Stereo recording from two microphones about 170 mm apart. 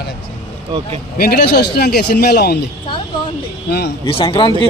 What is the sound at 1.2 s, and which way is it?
A man's voice, 65° left (ahead or behind).